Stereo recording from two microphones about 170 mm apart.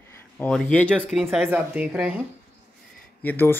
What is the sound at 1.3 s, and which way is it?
Speech, 5° right (ahead or behind).